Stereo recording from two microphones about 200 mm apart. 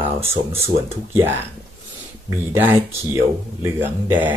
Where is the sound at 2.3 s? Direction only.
15° right (ahead or behind).